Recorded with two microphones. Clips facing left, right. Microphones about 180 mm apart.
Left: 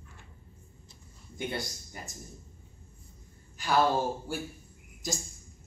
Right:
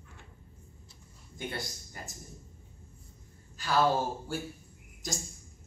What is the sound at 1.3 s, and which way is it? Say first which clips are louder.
Speech: left 3 dB; 15° left (ahead or behind).